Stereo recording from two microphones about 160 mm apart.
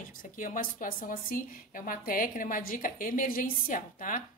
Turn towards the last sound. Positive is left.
turn(degrees=55)  # may be behind; listen again after turning